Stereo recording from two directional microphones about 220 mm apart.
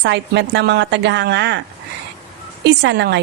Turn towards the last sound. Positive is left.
turn(degrees=-50)  # may be behind; listen again after turning